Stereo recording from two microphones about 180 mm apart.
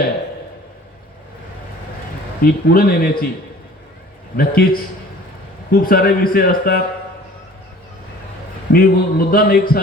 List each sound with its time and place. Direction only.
2.4 s a man's voice: 55° left (ahead or behind)
4.4 s a man's voice: 55° left (ahead or behind)
5.7 s a man's voice: 55° left (ahead or behind)
8.7 s a man's voice: 55° left (ahead or behind)